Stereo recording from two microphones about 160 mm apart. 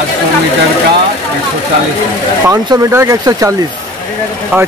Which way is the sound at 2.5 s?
20° right (ahead or behind).